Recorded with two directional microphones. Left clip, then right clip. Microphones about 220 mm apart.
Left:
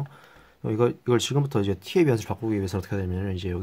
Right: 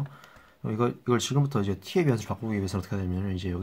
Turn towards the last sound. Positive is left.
turn(degrees=45)  # may be behind; listen again after turning